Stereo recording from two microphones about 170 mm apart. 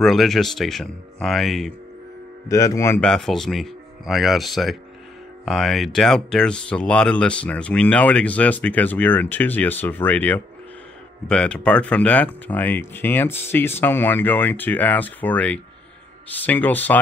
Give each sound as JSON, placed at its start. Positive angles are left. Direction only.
{"t": 0.0, "sound": "speech", "side_deg": 0}
{"t": 2.4, "sound": "speech", "side_deg": 20}
{"t": 3.0, "sound": "speech", "side_deg": 5}